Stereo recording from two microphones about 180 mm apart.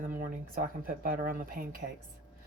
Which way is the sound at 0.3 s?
50° right (ahead or behind).